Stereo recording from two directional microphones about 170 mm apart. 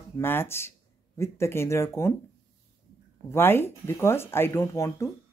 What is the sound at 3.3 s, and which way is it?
Speech, 15° left (ahead or behind).